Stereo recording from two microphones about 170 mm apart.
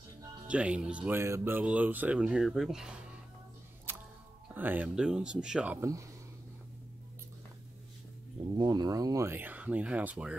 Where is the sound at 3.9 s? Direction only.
10° right (ahead or behind).